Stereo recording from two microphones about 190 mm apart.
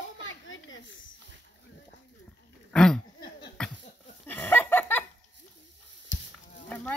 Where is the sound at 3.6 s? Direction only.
5° left (ahead or behind).